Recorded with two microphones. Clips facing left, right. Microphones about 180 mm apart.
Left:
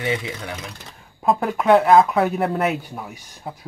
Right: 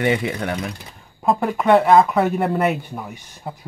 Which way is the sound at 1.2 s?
Centre (ahead or behind).